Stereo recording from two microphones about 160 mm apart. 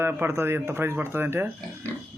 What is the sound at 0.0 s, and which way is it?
Speech, 15° right (ahead or behind).